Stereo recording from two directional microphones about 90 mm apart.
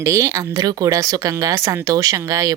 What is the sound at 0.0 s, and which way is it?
Speech, 30° right (ahead or behind).